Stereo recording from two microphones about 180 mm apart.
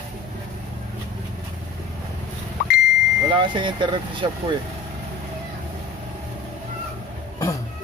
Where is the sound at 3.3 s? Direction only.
25° right (ahead or behind).